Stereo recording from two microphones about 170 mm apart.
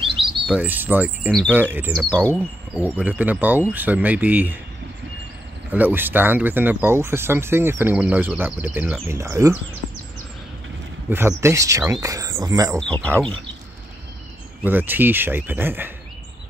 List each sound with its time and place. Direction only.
0.0 s chirp: 30° right (ahead or behind)
0.5 s speech: 10° right (ahead or behind)
5.7 s speech: 10° right (ahead or behind)
11.1 s speech: 15° right (ahead or behind)
12.7 s speech: 5° left (ahead or behind)
14.6 s speech: 10° right (ahead or behind)